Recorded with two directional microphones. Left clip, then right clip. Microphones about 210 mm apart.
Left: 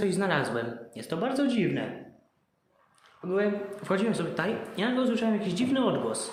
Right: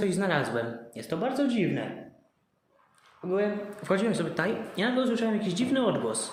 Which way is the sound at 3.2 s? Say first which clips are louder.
Even; 5° left (ahead or behind).